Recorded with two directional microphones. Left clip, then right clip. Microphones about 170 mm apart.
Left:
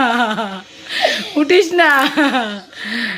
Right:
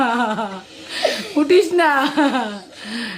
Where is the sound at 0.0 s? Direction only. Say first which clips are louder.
Left 3 dB; 15° left (ahead or behind).